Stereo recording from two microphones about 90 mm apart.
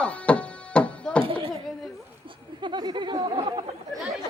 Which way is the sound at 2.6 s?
55° right (ahead or behind).